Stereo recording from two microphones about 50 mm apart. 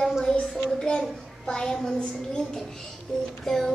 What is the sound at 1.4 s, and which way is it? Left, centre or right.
Speech, centre.